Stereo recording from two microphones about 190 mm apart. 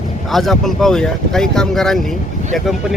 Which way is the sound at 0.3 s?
Centre (ahead or behind).